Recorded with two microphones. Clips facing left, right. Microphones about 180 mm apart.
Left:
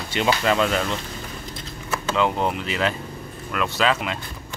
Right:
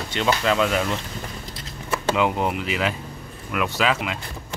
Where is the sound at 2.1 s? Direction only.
10° right (ahead or behind).